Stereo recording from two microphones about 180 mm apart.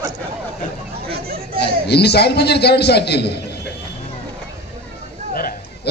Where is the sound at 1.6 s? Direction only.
65° left (ahead or behind).